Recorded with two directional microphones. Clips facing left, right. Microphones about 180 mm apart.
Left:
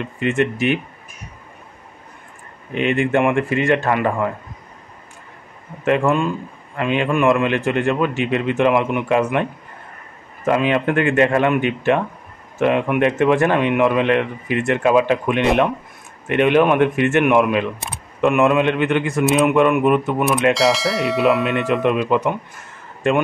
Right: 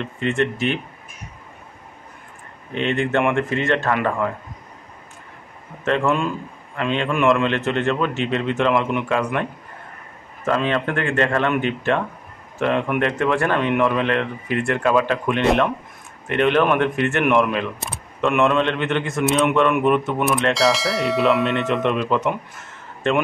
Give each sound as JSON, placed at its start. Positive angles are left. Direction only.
{"t": 0.0, "sound": "speech", "side_deg": 15}
{"t": 2.7, "sound": "speech", "side_deg": 10}
{"t": 6.0, "sound": "bell", "side_deg": 0}
{"t": 6.8, "sound": "speech", "side_deg": 10}
{"t": 13.2, "sound": "speech", "side_deg": 20}
{"t": 20.5, "sound": "bell", "side_deg": 0}
{"t": 21.6, "sound": "speech", "side_deg": 5}